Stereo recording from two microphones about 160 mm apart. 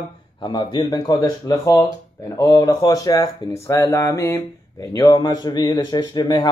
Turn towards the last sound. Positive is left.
turn(degrees=30)  # may be behind; listen again after turning